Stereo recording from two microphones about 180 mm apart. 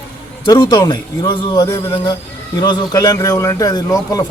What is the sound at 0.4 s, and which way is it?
A man's voice, 25° left (ahead or behind).